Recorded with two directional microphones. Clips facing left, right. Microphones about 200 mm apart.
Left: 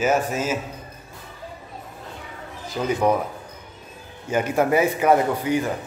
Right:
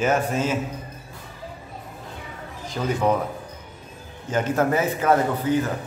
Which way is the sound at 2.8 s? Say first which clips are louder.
Left 1 dB; 10° left (ahead or behind).